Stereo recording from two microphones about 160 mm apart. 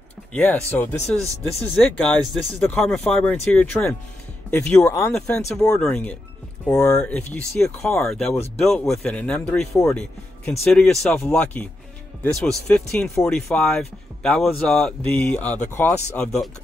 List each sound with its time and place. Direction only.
0.3 s speech: 10° left (ahead or behind)
5.7 s speech: 5° left (ahead or behind)
6.6 s speech: 15° left (ahead or behind)